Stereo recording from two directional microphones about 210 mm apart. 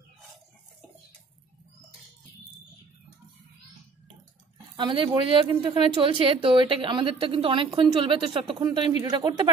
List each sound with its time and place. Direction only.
4.7 s a woman's voice: 25° right (ahead or behind)